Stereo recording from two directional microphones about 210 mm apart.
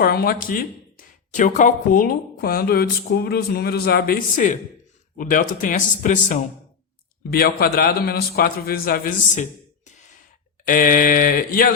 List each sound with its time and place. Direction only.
0.0 s speech: 45° left (ahead or behind)
7.3 s speech: 45° left (ahead or behind)